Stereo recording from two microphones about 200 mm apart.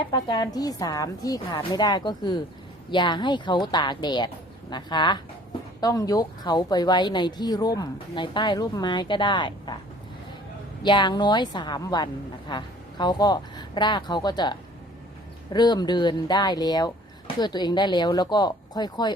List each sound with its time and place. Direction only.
0.0 s speech: 25° left (ahead or behind)
10.8 s speech: 25° left (ahead or behind)